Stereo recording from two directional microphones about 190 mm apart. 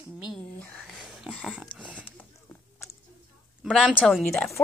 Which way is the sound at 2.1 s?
10° left (ahead or behind).